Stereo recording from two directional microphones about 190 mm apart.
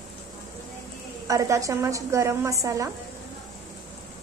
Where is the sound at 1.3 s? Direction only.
15° right (ahead or behind).